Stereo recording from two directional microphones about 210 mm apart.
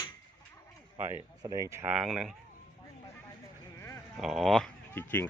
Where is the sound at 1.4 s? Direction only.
15° right (ahead or behind).